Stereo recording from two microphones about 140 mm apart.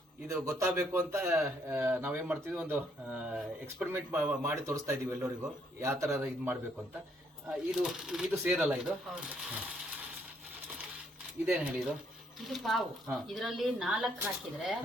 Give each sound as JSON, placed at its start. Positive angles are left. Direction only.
{"t": 0.3, "sound": "a man's voice", "side_deg": -20}
{"t": 7.5, "sound": "speech", "side_deg": -5}
{"t": 11.4, "sound": "speech", "side_deg": -10}
{"t": 12.5, "sound": "speech", "side_deg": 0}